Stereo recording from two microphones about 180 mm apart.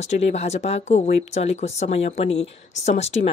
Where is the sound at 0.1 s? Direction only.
35° left (ahead or behind).